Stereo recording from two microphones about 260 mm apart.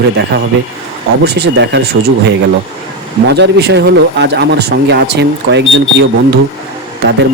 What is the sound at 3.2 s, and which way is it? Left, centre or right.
Speech, right.